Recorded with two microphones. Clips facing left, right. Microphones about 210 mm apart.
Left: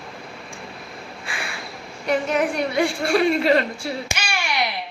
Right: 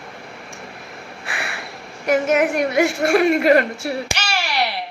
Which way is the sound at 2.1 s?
80° right.